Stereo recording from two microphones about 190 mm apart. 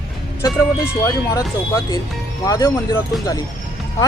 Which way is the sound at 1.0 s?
20° left (ahead or behind).